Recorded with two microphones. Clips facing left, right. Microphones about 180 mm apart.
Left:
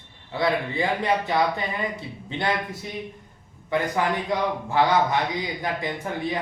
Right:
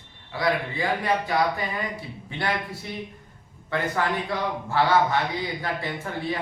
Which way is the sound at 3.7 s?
15° left (ahead or behind).